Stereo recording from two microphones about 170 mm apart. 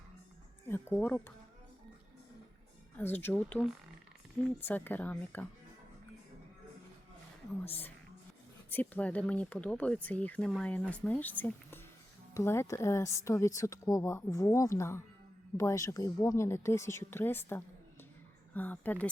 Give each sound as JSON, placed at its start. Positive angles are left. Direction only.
{"t": 0.7, "sound": "speech", "side_deg": 15}
{"t": 3.0, "sound": "speech", "side_deg": 10}
{"t": 7.6, "sound": "speech", "side_deg": 10}